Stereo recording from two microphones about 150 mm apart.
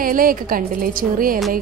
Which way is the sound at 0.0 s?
70° right (ahead or behind).